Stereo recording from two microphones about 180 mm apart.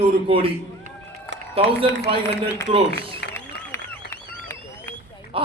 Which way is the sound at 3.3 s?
15° left (ahead or behind).